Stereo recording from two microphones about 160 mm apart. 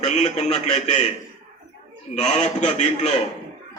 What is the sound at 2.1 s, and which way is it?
Speech, 45° left (ahead or behind).